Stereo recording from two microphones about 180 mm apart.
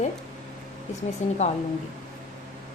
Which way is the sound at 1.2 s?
40° left (ahead or behind).